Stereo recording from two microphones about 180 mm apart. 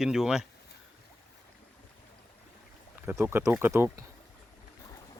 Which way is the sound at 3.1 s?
15° right (ahead or behind).